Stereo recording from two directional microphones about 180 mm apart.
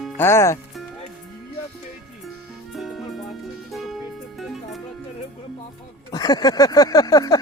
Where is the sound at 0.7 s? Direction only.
Centre (ahead or behind).